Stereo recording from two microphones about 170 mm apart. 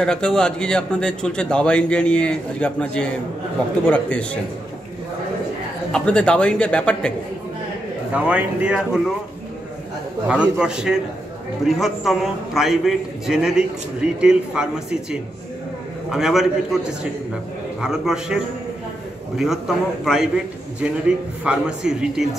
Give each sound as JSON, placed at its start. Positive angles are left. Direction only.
{"t": 0.0, "sound": "a man's voice", "side_deg": 5}
{"t": 5.9, "sound": "a man's voice", "side_deg": 5}
{"t": 8.1, "sound": "speech", "side_deg": -10}
{"t": 10.2, "sound": "a man's voice", "side_deg": -5}
{"t": 17.7, "sound": "a man's voice", "side_deg": -5}